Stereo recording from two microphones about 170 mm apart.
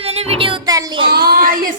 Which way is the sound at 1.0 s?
65° right (ahead or behind).